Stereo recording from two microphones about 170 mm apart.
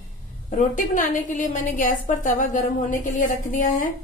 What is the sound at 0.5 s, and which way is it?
A woman's voice, 50° left (ahead or behind).